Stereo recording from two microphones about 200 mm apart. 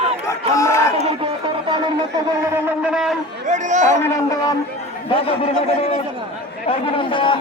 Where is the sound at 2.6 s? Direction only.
5° right (ahead or behind).